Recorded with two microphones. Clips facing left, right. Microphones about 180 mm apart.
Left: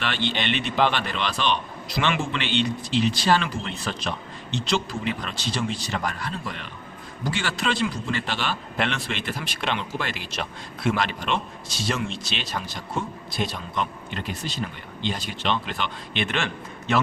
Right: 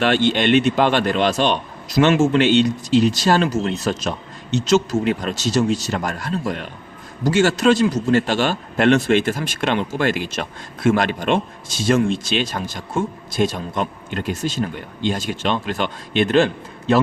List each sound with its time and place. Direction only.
0.0 s speech: 45° right (ahead or behind)